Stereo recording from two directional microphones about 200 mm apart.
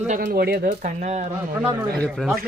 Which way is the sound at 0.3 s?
50° right (ahead or behind).